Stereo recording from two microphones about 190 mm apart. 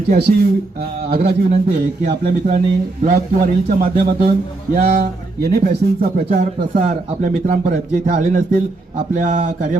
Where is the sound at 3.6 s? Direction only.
50° right (ahead or behind).